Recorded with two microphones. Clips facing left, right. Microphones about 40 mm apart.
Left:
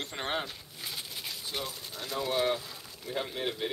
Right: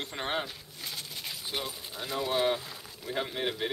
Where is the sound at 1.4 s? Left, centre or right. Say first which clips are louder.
Right 2 dB; centre.